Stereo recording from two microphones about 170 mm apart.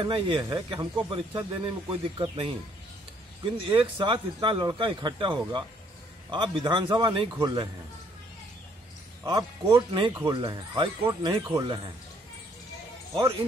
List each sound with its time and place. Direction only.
0.0 s speech: 30° right (ahead or behind)
9.2 s speech: 20° right (ahead or behind)